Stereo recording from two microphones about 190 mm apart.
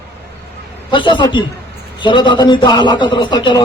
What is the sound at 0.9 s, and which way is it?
A man's voice, 25° left (ahead or behind).